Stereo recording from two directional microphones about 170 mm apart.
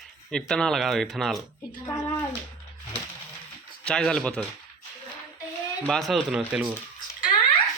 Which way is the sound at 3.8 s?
5° left (ahead or behind).